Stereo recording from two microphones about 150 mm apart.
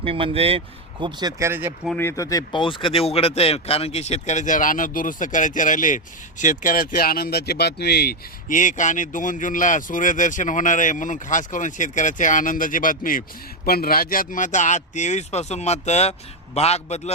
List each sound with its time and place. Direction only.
0.0 s speech: 40° right (ahead or behind)
1.4 s speech: 15° right (ahead or behind)
2.0 s speech: 20° left (ahead or behind); by 13.2 s 65° left (ahead or behind)
13.7 s speech: 85° left; by 17.2 s 45° left (ahead or behind)